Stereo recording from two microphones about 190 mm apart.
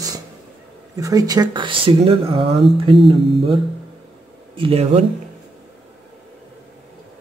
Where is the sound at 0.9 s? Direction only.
20° right (ahead or behind).